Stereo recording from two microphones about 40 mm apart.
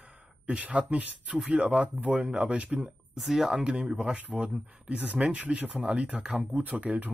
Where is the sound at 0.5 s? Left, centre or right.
Right.